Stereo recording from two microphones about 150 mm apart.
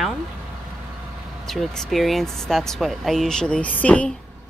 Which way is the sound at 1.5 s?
Centre (ahead or behind).